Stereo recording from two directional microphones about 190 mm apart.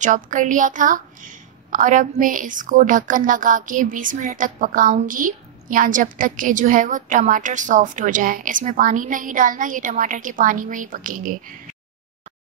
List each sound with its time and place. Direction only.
0.0 s a woman's voice: 40° right (ahead or behind)